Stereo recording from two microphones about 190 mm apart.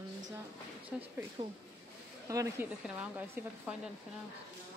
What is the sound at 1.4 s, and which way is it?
Speech, 30° right (ahead or behind).